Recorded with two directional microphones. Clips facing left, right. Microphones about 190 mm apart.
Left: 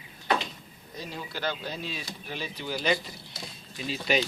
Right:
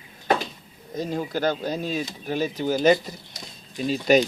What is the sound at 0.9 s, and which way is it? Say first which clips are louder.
Speech: right 11 dB; 45° right (ahead or behind).